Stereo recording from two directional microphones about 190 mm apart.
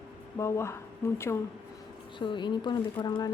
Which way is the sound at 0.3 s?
15° left (ahead or behind).